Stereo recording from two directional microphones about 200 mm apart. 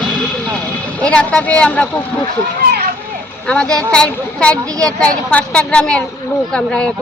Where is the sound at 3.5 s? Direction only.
5° left (ahead or behind).